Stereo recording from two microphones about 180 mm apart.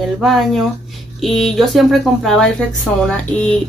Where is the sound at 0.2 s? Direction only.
Centre (ahead or behind).